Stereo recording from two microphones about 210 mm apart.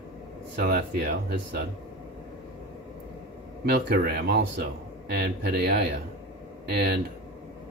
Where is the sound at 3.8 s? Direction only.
50° right (ahead or behind).